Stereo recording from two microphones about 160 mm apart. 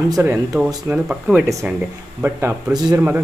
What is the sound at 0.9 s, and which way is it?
Speech, 5° right (ahead or behind).